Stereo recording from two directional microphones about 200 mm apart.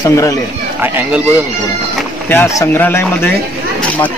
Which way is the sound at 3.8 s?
10° left (ahead or behind).